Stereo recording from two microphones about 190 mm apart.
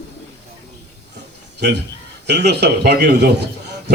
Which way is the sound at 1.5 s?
65° right (ahead or behind).